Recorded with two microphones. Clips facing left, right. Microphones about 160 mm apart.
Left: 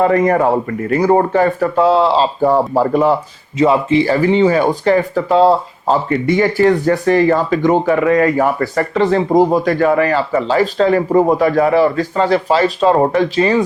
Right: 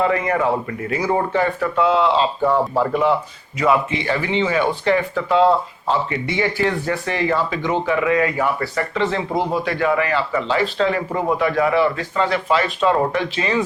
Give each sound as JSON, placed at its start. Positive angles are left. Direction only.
{"t": 0.0, "sound": "speech", "side_deg": 40}
{"t": 3.6, "sound": "speech", "side_deg": 30}